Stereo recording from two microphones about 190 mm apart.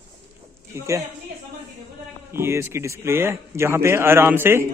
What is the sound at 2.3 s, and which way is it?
A man's voice, 15° right (ahead or behind).